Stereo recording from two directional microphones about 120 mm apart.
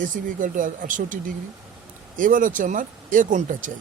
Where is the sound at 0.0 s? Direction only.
90° right.